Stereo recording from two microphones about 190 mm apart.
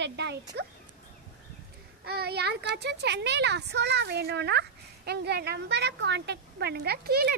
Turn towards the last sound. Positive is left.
turn(degrees=-55)  # may be behind; listen again after turning